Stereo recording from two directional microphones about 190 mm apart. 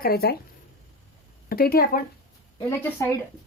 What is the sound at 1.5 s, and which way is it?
Speech, 50° left (ahead or behind).